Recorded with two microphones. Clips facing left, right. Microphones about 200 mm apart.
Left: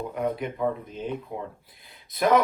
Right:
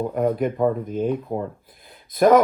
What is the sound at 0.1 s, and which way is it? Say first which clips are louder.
Speech: right 7 dB; 50° right (ahead or behind).